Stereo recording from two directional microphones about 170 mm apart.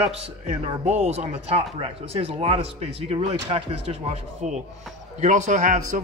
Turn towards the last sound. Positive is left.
turn(degrees=-50)  # may be behind; listen again after turning